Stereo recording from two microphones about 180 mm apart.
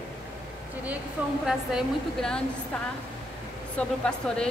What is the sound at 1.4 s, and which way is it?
Speech, centre (ahead or behind).